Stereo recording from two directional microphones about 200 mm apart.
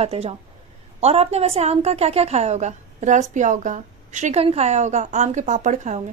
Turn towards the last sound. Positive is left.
turn(degrees=-35)  # may be behind; listen again after turning